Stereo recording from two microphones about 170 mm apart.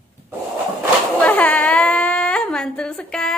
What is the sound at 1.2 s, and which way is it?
Speech, 10° left (ahead or behind).